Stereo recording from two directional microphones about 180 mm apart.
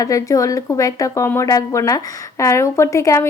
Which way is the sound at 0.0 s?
20° left (ahead or behind).